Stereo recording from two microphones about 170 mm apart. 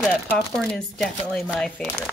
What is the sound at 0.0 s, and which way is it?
A woman's voice, centre (ahead or behind).